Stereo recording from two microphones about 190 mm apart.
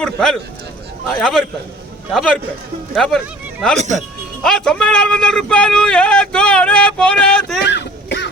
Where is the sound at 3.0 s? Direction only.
Centre (ahead or behind).